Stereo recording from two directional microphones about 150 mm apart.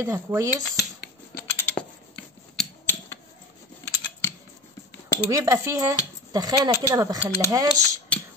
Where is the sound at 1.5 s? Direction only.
10° left (ahead or behind).